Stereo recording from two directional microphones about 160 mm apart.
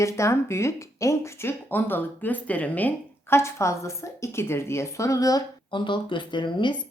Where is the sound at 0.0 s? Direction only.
20° left (ahead or behind).